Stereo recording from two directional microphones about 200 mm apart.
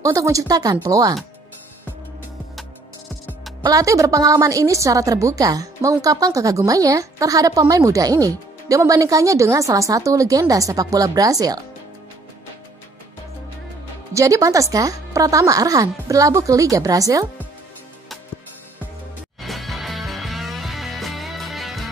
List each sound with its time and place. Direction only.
0.0 s a woman's voice: 15° right (ahead or behind)
3.6 s a woman's voice: 15° right (ahead or behind)
14.1 s a woman's voice: 15° right (ahead or behind)
19.4 s music: centre (ahead or behind)